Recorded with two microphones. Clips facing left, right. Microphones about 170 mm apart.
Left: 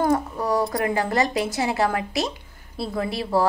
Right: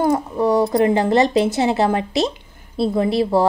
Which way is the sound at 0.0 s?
20° right (ahead or behind).